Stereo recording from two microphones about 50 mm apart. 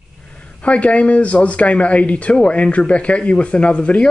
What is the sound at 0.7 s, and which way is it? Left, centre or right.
Speech, left.